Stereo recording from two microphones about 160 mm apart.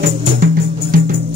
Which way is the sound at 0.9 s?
60° right (ahead or behind).